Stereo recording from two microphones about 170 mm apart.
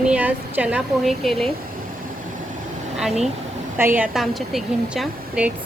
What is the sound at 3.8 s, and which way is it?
Speech, 10° right (ahead or behind).